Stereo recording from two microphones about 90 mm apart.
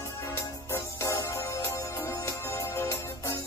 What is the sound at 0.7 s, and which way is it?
Music, 35° left (ahead or behind).